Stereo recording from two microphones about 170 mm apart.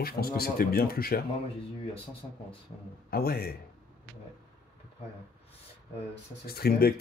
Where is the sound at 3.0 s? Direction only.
60° left (ahead or behind).